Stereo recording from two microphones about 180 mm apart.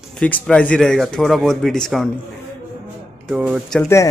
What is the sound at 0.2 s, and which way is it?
Speech, 5° left (ahead or behind).